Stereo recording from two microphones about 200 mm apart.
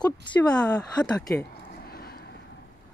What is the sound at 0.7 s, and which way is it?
Speech, 20° left (ahead or behind).